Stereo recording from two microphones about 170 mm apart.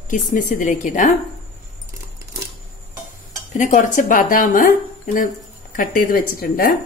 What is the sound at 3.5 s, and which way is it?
A woman's voice, 50° left (ahead or behind).